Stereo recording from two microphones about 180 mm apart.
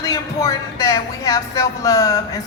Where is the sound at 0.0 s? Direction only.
20° left (ahead or behind).